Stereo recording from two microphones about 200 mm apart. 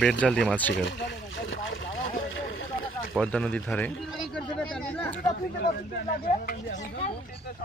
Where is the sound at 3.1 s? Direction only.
5° left (ahead or behind).